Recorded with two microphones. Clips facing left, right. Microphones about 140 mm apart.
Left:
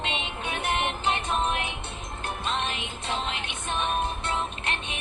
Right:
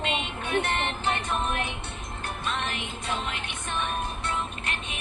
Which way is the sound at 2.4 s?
20° left (ahead or behind).